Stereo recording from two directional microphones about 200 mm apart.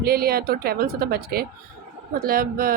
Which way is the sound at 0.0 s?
50° right (ahead or behind).